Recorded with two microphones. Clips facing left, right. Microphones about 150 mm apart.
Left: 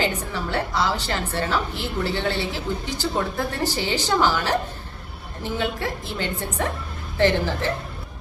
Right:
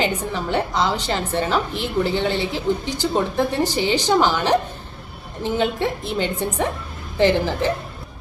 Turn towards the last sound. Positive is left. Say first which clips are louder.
# right 3 dB
turn(degrees=-15)  # may be behind; listen again after turning